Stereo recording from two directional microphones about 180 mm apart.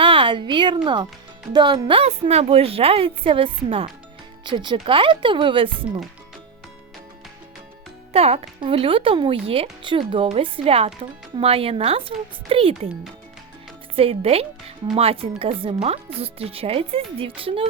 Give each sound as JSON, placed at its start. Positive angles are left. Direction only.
{"t": 0.0, "sound": "a woman's voice", "side_deg": -30}
{"t": 8.1, "sound": "speech", "side_deg": -35}
{"t": 13.9, "sound": "speech", "side_deg": -30}